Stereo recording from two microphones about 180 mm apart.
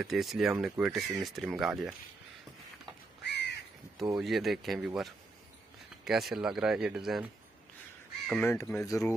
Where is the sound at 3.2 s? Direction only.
70° left (ahead or behind).